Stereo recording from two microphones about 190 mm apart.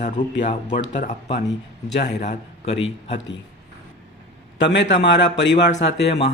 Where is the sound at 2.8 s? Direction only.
75° left (ahead or behind).